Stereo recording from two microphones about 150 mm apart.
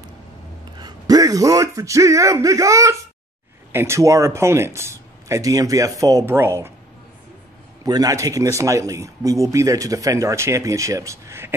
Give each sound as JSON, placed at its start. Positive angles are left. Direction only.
{"t": 0.7, "sound": "speech", "side_deg": -25}
{"t": 7.8, "sound": "speech", "side_deg": -25}